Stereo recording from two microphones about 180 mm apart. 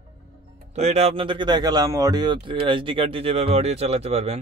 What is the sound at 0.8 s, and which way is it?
Speech, 35° right (ahead or behind).